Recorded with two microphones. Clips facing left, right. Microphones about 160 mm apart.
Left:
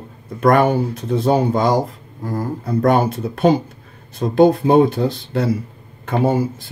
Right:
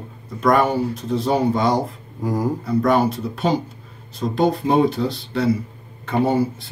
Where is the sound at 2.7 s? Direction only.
50° left (ahead or behind).